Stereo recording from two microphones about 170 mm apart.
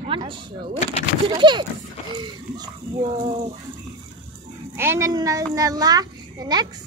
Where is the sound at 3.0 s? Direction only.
50° right (ahead or behind).